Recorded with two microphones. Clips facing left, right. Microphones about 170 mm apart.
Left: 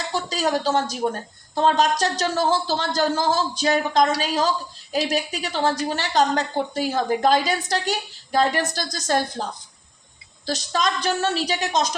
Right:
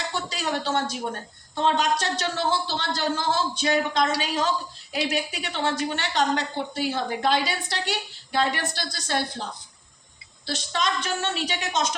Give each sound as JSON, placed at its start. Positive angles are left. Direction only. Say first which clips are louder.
{"t": 0.1, "sound": "a man's voice", "louder": "left 9 dB", "side_deg": 40}